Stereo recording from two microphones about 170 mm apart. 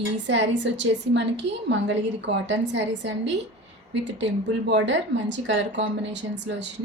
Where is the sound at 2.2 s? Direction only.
90° right.